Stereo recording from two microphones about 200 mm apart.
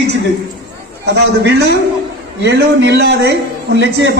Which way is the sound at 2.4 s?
60° right (ahead or behind).